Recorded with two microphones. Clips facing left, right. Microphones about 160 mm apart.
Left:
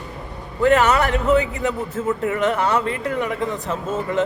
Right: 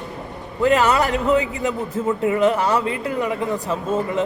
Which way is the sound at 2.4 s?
10° right (ahead or behind).